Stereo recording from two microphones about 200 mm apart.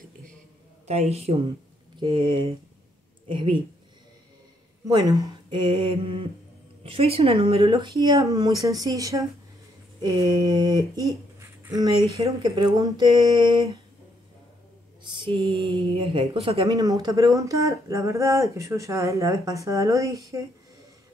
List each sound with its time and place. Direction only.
0.8 s a woman's voice: 30° right (ahead or behind)
4.8 s speech: 20° right (ahead or behind)
15.0 s speech: 25° right (ahead or behind)